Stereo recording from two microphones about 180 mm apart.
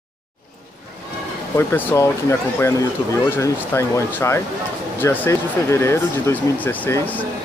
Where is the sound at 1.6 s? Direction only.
10° left (ahead or behind).